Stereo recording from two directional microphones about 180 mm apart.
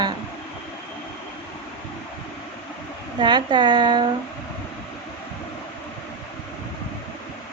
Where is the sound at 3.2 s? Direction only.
25° right (ahead or behind).